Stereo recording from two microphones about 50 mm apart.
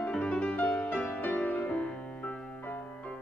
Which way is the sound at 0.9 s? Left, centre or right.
Left.